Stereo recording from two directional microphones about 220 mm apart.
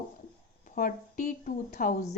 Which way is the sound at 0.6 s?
35° left (ahead or behind).